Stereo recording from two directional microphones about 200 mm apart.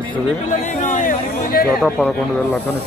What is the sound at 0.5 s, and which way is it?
Chatter, 35° left (ahead or behind).